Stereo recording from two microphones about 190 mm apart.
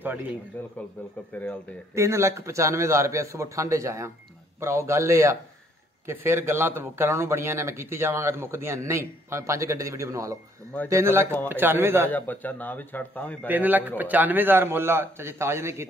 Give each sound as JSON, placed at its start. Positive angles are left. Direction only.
{"t": 0.5, "sound": "a man's voice", "side_deg": 10}
{"t": 2.0, "sound": "speech", "side_deg": -15}
{"t": 12.1, "sound": "a man's voice", "side_deg": 10}
{"t": 13.5, "sound": "speech", "side_deg": -10}